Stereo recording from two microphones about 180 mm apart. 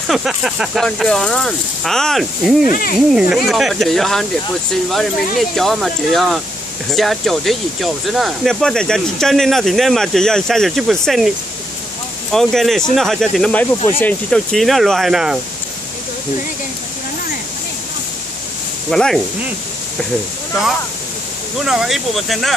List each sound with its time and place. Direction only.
0.1 s speech: 5° right (ahead or behind)
2.6 s speech: 50° left (ahead or behind)
3.1 s speech: 5° right (ahead or behind)
5.6 s speech: centre (ahead or behind)
18.9 s speech: centre (ahead or behind)
21.6 s speech: centre (ahead or behind)